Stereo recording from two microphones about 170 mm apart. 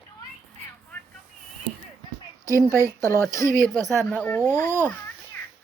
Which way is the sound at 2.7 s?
15° right (ahead or behind).